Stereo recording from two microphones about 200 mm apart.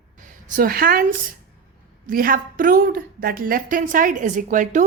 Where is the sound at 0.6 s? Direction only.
50° right (ahead or behind).